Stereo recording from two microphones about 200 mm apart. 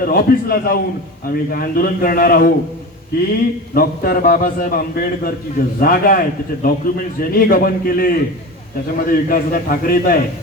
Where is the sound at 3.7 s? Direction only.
45° left (ahead or behind).